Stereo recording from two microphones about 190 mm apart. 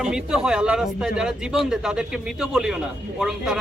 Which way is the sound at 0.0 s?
5° right (ahead or behind).